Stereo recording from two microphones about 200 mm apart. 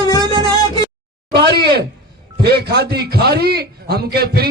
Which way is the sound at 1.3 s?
55° right (ahead or behind).